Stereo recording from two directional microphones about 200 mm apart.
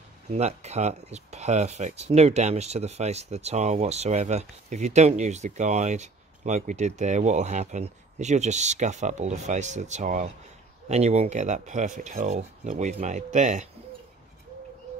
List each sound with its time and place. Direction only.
0.3 s speech: 35° right (ahead or behind)